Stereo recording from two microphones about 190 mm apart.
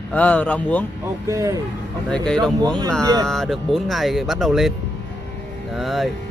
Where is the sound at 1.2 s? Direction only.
15° right (ahead or behind).